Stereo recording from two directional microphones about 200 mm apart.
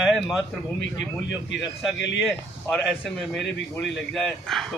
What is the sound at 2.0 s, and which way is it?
Speech, 60° left (ahead or behind).